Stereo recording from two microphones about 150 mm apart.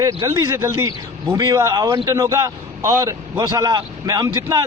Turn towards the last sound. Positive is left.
turn(degrees=-25)  # may be behind; listen again after turning